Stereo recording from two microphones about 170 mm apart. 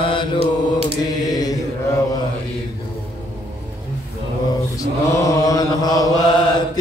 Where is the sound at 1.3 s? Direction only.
20° left (ahead or behind).